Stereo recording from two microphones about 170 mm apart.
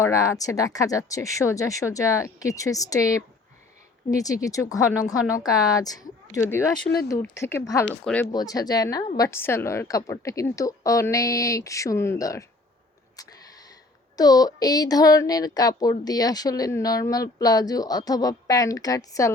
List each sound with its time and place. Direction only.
0.0 s a woman's voice: 20° left (ahead or behind)
6.8 s speech: 75° left (ahead or behind)
7.1 s speech: 15° left (ahead or behind)
8.0 s speech: 10° left (ahead or behind)
8.3 s a woman's voice: 20° left (ahead or behind)
14.2 s a woman's voice: 20° left (ahead or behind)